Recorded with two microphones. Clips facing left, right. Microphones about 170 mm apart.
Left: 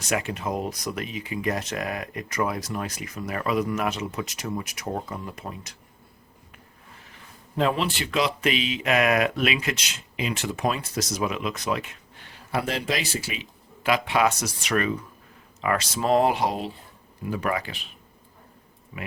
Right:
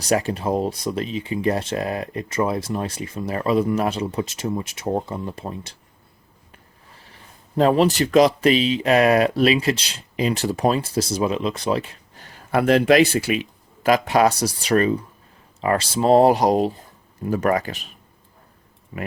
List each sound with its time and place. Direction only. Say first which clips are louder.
0.0 s speech: right 6 dB; 35° right (ahead or behind)
7.5 s speech: right 8 dB; 40° right (ahead or behind)
18.9 s speech: right 6 dB; 40° right (ahead or behind)